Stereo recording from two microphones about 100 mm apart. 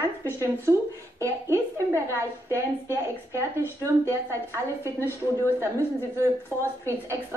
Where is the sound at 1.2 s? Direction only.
30° right (ahead or behind).